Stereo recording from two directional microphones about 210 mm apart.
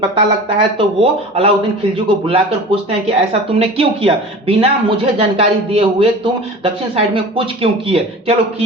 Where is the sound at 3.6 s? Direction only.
25° right (ahead or behind).